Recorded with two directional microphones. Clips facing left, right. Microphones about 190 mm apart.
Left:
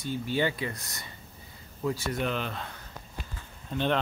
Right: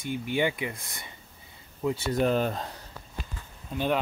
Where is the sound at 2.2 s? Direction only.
40° right (ahead or behind).